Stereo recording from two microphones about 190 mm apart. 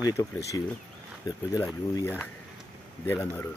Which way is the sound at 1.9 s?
10° left (ahead or behind).